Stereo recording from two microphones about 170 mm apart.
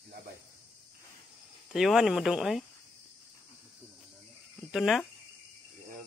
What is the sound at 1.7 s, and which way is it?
Speech, centre (ahead or behind).